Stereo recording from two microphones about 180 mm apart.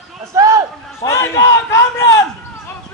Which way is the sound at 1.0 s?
15° left (ahead or behind).